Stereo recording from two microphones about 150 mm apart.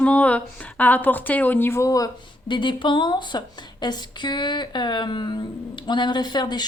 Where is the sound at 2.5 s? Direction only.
30° left (ahead or behind).